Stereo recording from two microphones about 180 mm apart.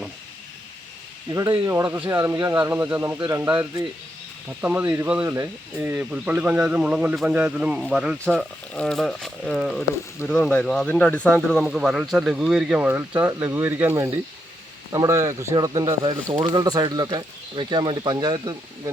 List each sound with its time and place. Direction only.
1.3 s speech: 20° right (ahead or behind)